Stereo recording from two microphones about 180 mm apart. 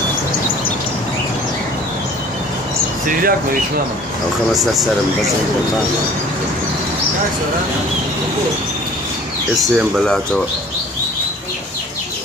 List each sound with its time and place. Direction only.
3.1 s speech: 55° right (ahead or behind)
4.5 s speech: centre (ahead or behind)
9.8 s speech: centre (ahead or behind)